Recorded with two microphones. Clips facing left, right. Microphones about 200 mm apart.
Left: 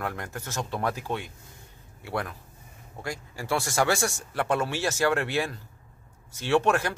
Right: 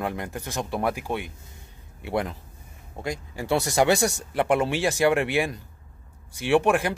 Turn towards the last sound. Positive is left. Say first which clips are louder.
# right 3 dB
turn(degrees=-15)  # may be behind; listen again after turning